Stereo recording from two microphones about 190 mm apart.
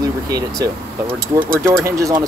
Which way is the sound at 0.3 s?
20° right (ahead or behind).